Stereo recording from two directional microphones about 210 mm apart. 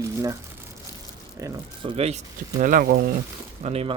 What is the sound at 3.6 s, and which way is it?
Speech, 30° right (ahead or behind).